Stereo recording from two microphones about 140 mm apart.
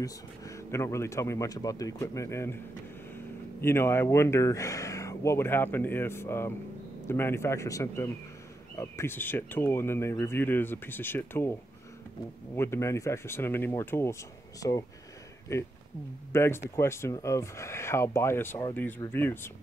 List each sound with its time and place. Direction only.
0.7 s speech: 20° left (ahead or behind)
3.6 s speech: 15° left (ahead or behind)
12.5 s speech: 20° left (ahead or behind)